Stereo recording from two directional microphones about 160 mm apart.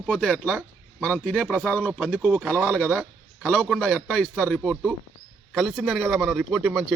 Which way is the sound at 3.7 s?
5° left (ahead or behind).